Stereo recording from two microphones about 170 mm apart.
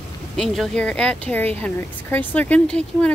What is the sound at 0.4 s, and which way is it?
Speech, centre (ahead or behind).